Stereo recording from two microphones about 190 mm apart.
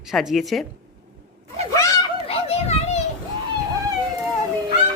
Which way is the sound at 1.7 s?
15° left (ahead or behind).